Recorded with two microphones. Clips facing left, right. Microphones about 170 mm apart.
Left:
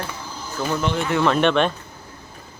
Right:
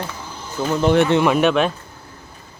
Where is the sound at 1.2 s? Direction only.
5° right (ahead or behind).